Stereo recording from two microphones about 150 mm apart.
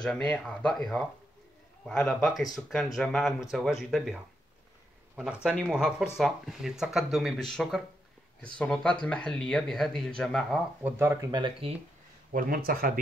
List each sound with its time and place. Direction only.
0.0 s speech: 5° left (ahead or behind)
10.8 s speech: 15° right (ahead or behind); by 11.7 s 30° right (ahead or behind)
12.3 s speech: 70° right (ahead or behind)